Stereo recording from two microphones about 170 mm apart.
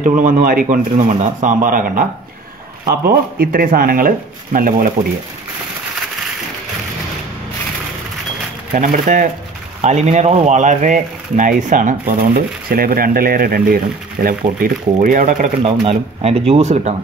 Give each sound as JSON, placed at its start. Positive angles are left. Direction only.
{"t": 0.0, "sound": "speech", "side_deg": -50}
{"t": 3.3, "sound": "speech", "side_deg": -60}
{"t": 8.7, "sound": "speech", "side_deg": -50}
{"t": 15.6, "sound": "speech", "side_deg": -35}